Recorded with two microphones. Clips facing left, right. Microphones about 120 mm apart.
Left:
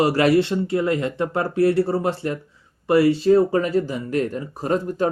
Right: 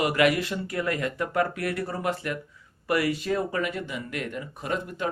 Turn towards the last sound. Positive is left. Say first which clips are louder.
# left 9 dB
turn(degrees=35)  # may be behind; listen again after turning